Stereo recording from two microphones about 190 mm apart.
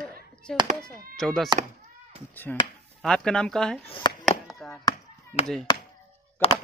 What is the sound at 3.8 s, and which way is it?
Speech, 25° left (ahead or behind).